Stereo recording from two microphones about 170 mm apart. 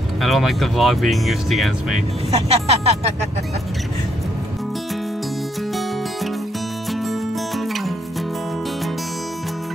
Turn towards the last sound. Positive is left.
turn(degrees=0)  # may be behind; listen again after turning